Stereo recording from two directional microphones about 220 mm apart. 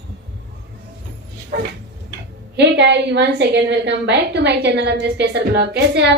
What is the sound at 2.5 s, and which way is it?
A woman's voice, 50° right (ahead or behind).